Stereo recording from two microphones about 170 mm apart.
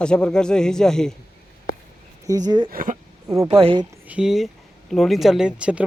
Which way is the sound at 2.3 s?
25° right (ahead or behind).